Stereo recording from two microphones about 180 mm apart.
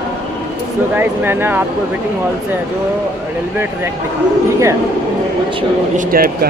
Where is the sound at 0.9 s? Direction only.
10° right (ahead or behind).